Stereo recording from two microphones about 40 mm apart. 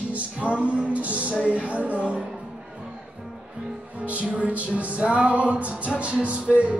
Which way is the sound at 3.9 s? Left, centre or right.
Right.